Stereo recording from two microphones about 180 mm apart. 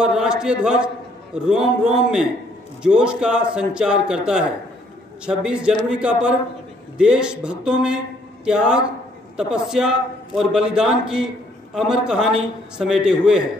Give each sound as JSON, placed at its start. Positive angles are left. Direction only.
{"t": 0.0, "sound": "a man's voice", "side_deg": -5}